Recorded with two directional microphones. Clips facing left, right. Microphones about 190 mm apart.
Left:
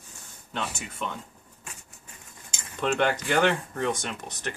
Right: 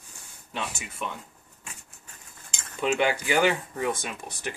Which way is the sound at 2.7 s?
10° right (ahead or behind).